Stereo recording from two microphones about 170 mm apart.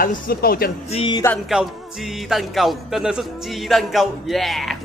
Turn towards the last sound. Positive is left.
turn(degrees=0)  # may be behind; listen again after turning